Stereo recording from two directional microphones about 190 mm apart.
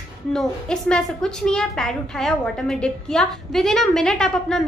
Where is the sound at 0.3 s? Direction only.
5° left (ahead or behind).